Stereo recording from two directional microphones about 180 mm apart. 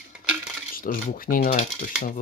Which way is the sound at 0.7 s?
50° left (ahead or behind).